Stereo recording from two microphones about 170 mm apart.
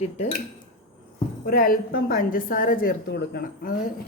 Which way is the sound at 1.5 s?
60° left (ahead or behind).